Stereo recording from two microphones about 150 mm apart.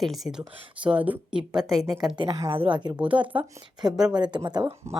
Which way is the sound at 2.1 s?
30° right (ahead or behind).